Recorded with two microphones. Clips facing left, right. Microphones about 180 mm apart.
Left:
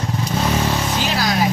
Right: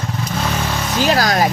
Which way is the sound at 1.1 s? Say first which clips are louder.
Right 2 dB; 45° right (ahead or behind).